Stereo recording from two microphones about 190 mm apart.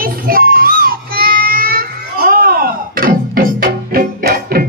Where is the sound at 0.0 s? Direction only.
50° right (ahead or behind).